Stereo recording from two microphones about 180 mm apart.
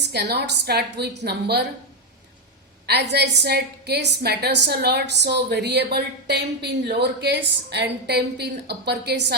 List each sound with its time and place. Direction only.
0.0 s a woman's voice: 70° right (ahead or behind)
2.8 s a woman's voice: 65° right (ahead or behind)